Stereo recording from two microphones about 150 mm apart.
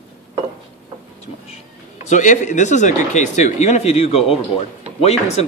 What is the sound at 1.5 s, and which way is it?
Speech, 55° left (ahead or behind).